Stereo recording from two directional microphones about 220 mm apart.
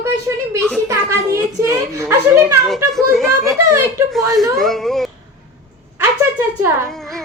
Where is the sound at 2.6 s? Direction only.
Centre (ahead or behind).